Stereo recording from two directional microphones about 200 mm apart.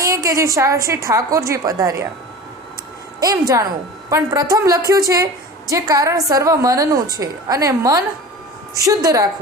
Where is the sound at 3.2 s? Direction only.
15° right (ahead or behind).